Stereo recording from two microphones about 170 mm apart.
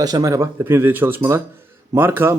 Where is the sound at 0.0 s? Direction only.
20° right (ahead or behind).